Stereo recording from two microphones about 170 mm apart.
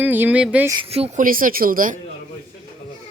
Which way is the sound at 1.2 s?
55° right (ahead or behind).